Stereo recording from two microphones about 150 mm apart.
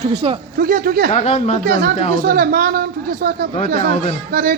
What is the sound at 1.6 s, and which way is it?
A woman's voice, 75° right (ahead or behind).